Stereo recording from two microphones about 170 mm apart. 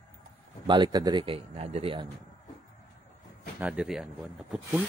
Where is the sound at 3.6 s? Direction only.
5° right (ahead or behind).